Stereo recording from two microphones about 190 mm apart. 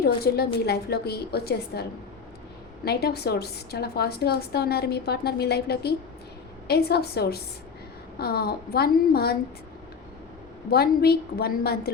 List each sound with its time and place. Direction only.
0.3 s a woman's voice: 55° left (ahead or behind)
10.7 s a woman's voice: 55° left (ahead or behind)